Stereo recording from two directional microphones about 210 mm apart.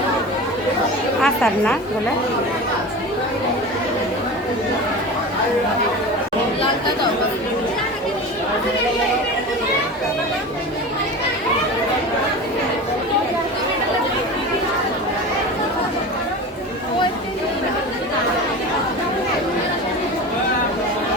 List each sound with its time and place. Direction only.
1.2 s a woman's voice: 5° left (ahead or behind)